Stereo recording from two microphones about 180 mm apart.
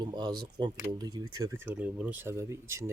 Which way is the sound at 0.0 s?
25° right (ahead or behind).